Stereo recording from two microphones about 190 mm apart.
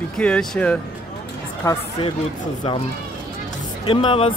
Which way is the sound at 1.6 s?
15° left (ahead or behind).